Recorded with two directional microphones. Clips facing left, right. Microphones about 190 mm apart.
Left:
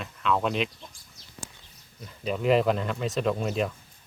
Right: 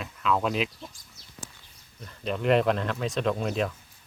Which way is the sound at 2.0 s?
5° left (ahead or behind).